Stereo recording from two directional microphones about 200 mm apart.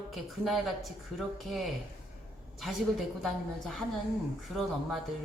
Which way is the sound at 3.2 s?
Centre (ahead or behind).